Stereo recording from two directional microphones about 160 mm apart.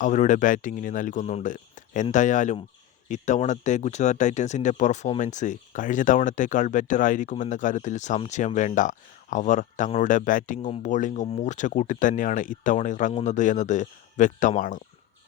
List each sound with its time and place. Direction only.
0.0 s speech: 50° left (ahead or behind)